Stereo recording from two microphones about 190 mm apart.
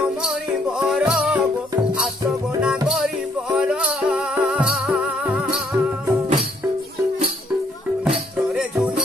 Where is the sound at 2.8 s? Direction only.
Centre (ahead or behind).